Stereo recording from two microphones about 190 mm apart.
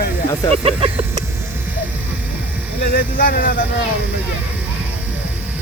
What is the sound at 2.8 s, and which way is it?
Speech, 55° left (ahead or behind).